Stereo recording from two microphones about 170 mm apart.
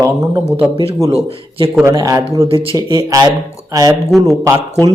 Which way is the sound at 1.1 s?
35° right (ahead or behind).